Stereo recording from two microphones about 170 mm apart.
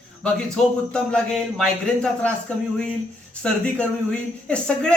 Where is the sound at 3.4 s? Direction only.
5° left (ahead or behind).